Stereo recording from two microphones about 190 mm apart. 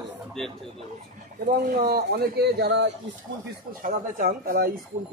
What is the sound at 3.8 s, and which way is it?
Speech, 50° right (ahead or behind).